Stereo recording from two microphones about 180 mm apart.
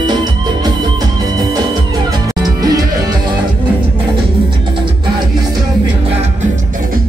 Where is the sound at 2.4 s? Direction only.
20° right (ahead or behind).